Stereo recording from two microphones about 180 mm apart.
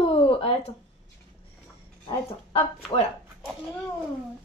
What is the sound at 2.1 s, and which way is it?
Speech, 30° left (ahead or behind).